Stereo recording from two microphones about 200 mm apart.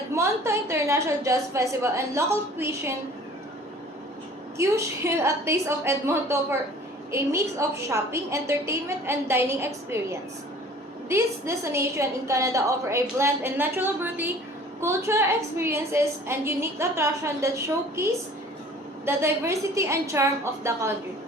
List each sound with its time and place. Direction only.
0.1 s a woman's voice: 15° right (ahead or behind)
4.5 s a woman's voice: 15° right (ahead or behind)